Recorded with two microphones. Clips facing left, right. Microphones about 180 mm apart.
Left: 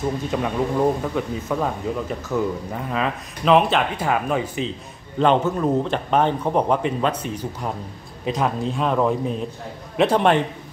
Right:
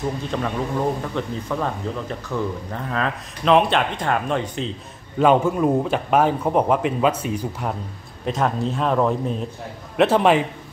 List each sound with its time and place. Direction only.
0.3 s speech: 10° left (ahead or behind)
5.2 s a man's voice: 10° right (ahead or behind)